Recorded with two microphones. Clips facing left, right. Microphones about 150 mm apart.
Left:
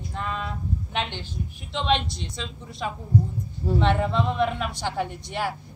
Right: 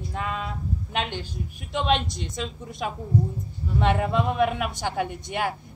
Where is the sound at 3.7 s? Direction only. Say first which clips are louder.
Right 1 dB; 10° right (ahead or behind).